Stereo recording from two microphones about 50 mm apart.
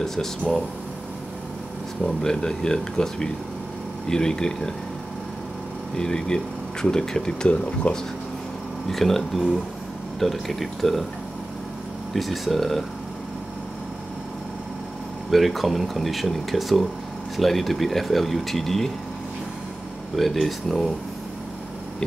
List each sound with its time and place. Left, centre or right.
0.0 s speech: centre
2.2 s speech: centre
5.9 s speech: centre
7.9 s speech: left
8.8 s speech: centre
12.1 s speech: centre
15.3 s speech: centre
20.2 s speech: centre